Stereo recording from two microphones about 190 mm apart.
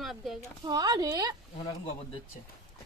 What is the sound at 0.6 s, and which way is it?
Speech, 20° right (ahead or behind).